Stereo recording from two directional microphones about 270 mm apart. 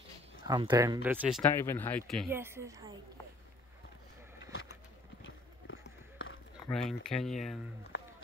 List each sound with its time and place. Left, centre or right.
0.5 s speech: centre
1.5 s speech: centre
2.3 s speech: centre
4.5 s a sound: left
5.2 s run: left
6.7 s speech: centre
7.9 s run: left